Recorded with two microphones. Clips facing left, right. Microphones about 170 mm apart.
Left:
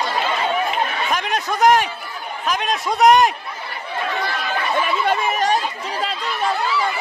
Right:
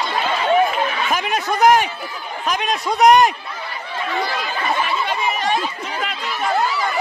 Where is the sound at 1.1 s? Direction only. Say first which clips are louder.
Right 1 dB; 5° right (ahead or behind).